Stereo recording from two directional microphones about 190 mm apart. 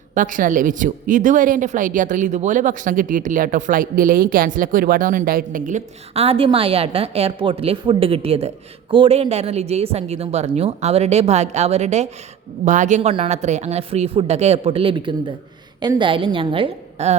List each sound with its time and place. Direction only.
0.1 s a woman's voice: 45° right (ahead or behind)